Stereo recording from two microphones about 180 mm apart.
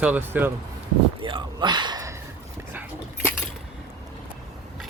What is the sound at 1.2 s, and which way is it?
Speech, 25° right (ahead or behind).